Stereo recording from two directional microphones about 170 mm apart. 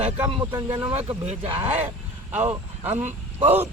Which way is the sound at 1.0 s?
40° right (ahead or behind).